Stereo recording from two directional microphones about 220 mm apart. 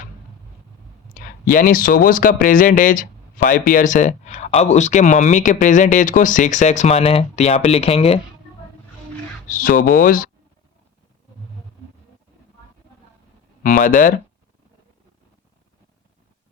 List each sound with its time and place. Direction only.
1.1 s speech: 40° left (ahead or behind)
9.5 s speech: 40° left (ahead or behind)
13.6 s speech: 40° left (ahead or behind)